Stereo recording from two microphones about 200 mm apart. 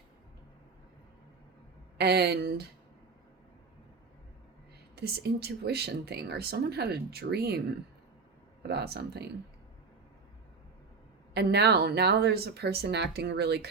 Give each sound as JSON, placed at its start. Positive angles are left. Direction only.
{"t": 2.0, "sound": "speech", "side_deg": -55}
{"t": 4.9, "sound": "speech", "side_deg": -55}
{"t": 8.6, "sound": "speech", "side_deg": -55}
{"t": 11.3, "sound": "speech", "side_deg": -55}